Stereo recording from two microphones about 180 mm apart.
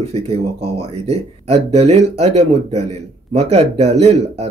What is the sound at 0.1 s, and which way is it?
Speech, 35° right (ahead or behind).